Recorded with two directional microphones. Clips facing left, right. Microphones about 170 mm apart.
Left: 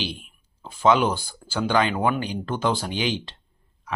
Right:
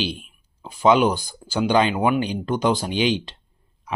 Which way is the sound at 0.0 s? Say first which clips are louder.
Right 4 dB; 20° right (ahead or behind).